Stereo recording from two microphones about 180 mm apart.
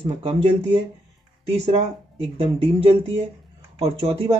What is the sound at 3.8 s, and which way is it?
Speech, 30° right (ahead or behind).